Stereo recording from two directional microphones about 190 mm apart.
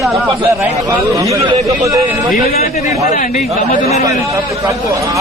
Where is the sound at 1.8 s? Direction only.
15° right (ahead or behind).